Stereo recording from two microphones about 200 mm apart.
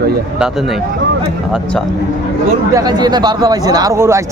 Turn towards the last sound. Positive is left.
turn(degrees=-15)  # may be behind; listen again after turning